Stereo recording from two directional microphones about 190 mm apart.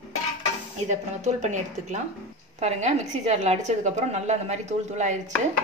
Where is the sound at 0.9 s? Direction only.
40° right (ahead or behind).